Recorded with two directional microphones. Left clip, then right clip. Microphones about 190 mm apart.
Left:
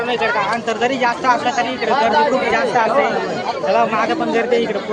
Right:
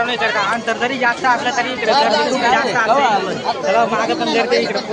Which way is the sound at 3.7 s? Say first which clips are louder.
Even; 15° left (ahead or behind).